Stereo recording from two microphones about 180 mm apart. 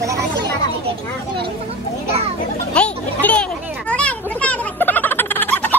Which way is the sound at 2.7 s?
5° left (ahead or behind).